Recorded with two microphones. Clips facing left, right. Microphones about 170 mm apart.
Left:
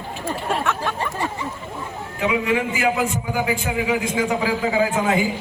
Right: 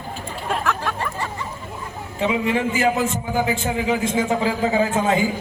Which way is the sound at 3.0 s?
25° right (ahead or behind).